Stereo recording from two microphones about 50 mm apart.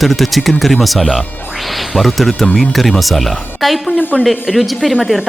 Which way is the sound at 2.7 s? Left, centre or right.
Centre.